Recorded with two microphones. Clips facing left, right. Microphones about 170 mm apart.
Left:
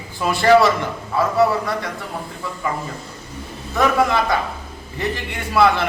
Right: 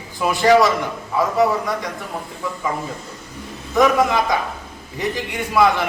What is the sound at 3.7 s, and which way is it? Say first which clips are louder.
Speech: right 2 dB; 15° right (ahead or behind).